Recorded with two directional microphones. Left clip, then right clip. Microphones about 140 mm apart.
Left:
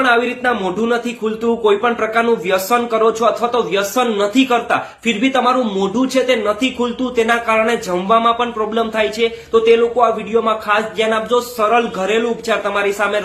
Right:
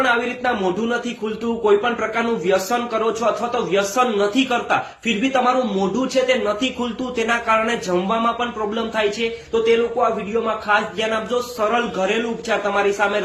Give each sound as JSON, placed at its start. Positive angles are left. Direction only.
{"t": 0.0, "sound": "speech", "side_deg": 25}